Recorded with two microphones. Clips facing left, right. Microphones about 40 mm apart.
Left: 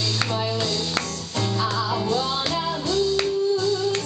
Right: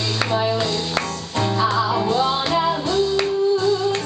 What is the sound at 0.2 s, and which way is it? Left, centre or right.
Music, right.